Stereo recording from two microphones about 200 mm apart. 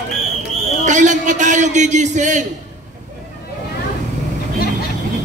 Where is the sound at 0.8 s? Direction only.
40° right (ahead or behind).